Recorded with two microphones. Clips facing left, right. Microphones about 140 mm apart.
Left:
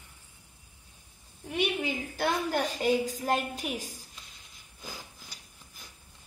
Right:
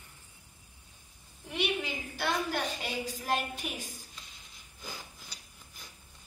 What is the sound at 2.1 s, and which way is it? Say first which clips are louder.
A woman's voice: left 3 dB; 40° left (ahead or behind).